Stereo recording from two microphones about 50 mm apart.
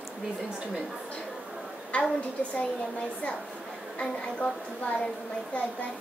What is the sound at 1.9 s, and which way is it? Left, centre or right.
Speech, left.